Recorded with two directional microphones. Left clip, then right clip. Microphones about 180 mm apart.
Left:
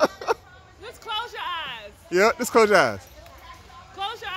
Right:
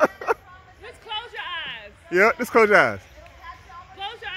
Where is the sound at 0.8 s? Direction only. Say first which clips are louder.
Left 2 dB; 40° left (ahead or behind).